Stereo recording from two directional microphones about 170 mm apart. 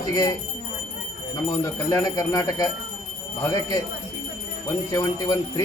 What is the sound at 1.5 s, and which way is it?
A man's voice, 15° left (ahead or behind).